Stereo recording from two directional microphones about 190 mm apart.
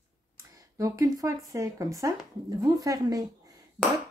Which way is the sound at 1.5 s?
15° right (ahead or behind).